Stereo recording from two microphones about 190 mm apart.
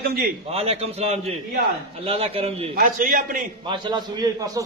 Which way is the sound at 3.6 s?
25° right (ahead or behind).